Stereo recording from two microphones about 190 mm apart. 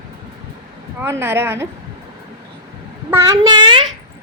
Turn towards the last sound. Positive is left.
turn(degrees=-25)  # may be behind; listen again after turning